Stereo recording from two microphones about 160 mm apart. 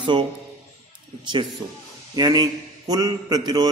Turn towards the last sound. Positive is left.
turn(degrees=-25)  # may be behind; listen again after turning